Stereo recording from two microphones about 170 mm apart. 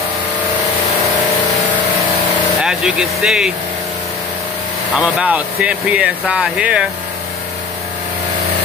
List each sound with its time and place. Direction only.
2.6 s speech: 5° right (ahead or behind)
4.9 s speech: 5° right (ahead or behind)